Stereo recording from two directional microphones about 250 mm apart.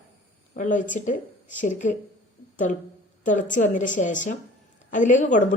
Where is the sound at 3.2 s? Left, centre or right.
Left.